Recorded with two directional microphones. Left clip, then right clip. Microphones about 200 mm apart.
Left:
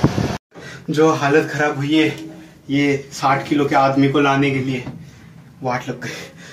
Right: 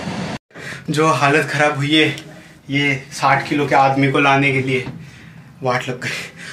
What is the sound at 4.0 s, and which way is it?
Speech, 20° right (ahead or behind).